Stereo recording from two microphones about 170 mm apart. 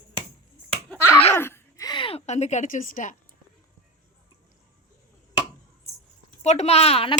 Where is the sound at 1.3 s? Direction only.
15° left (ahead or behind); by 3.1 s 50° left (ahead or behind).